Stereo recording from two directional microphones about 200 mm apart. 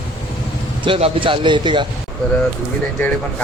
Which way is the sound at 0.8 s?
25° right (ahead or behind).